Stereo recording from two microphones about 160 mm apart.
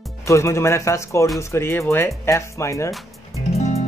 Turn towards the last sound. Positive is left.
turn(degrees=40)  # may be behind; listen again after turning